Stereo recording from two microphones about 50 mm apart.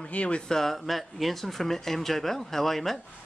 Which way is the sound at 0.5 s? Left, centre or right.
Centre.